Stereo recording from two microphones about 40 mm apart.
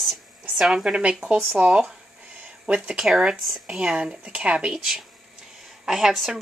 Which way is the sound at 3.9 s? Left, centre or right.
Right.